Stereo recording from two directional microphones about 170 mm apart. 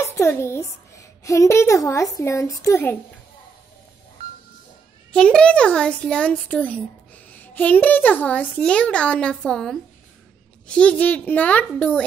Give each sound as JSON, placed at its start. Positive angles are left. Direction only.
{"t": 0.0, "sound": "a woman's voice", "side_deg": 15}
{"t": 5.1, "sound": "a child's voice", "side_deg": 5}